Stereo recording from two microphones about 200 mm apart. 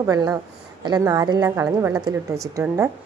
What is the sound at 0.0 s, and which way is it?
A woman's voice, 15° right (ahead or behind).